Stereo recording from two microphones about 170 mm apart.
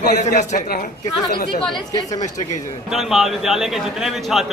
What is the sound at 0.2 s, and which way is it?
Speech, 45° left (ahead or behind).